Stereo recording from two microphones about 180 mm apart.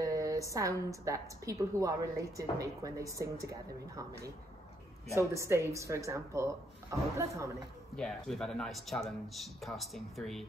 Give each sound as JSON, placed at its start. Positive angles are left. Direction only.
{"t": 0.0, "sound": "a woman's voice", "side_deg": -20}
{"t": 5.3, "sound": "a woman's voice", "side_deg": -15}
{"t": 7.9, "sound": "speech", "side_deg": 5}